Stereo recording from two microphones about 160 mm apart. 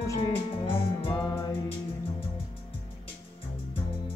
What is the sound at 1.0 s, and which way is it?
Music, 35° left (ahead or behind).